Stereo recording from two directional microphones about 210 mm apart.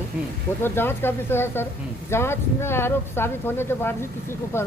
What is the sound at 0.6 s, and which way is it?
Speech, 10° left (ahead or behind).